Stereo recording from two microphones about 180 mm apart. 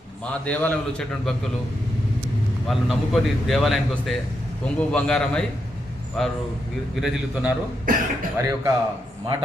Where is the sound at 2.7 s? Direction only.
Centre (ahead or behind).